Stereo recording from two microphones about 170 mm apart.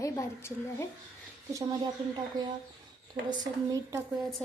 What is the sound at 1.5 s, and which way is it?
Speech, 20° right (ahead or behind).